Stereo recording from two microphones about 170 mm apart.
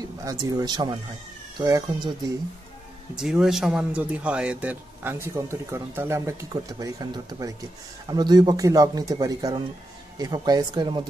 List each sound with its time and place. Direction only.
0.0 s speech: 20° right (ahead or behind)
3.2 s a man's voice: 5° right (ahead or behind); by 11.1 s 30° right (ahead or behind)